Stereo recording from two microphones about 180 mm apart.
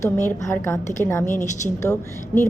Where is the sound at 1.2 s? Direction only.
40° left (ahead or behind).